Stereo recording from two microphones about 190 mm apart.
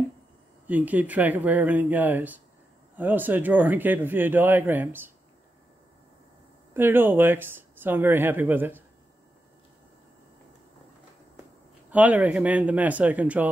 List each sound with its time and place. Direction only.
0.7 s speech: 10° right (ahead or behind)
6.7 s speech: 10° right (ahead or behind)
11.9 s speech: 10° right (ahead or behind)